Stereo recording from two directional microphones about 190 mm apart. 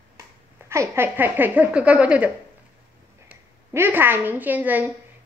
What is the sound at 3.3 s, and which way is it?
A woman's voice, 10° right (ahead or behind).